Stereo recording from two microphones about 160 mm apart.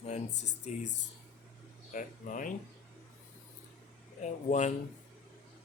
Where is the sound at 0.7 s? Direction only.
45° left (ahead or behind).